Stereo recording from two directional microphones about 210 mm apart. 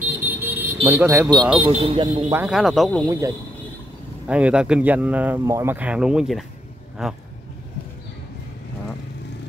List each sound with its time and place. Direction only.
0.2 s vehicle: 10° right (ahead or behind)
0.8 s speech: 10° right (ahead or behind)
1.6 s a man's voice: 30° right (ahead or behind)
2.3 s speech: 5° right (ahead or behind)
3.1 s speech: 15° right (ahead or behind)